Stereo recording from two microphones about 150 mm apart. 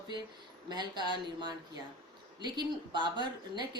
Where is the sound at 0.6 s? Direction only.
30° right (ahead or behind).